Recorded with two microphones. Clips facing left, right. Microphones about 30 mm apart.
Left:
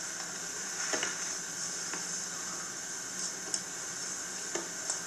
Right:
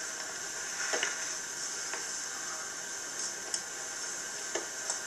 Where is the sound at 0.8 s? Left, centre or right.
Right.